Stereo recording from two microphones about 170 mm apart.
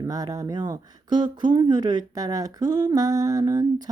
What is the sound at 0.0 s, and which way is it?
Speech, 20° right (ahead or behind).